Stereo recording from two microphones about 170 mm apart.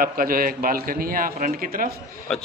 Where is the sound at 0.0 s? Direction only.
60° right (ahead or behind).